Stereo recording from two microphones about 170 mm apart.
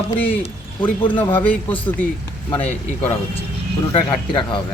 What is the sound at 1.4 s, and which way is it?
Speech, 10° left (ahead or behind).